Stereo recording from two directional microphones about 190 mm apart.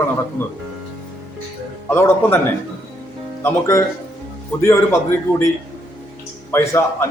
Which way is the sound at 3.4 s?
15° left (ahead or behind).